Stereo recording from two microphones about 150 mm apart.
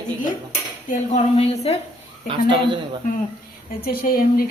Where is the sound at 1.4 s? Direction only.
45° left (ahead or behind).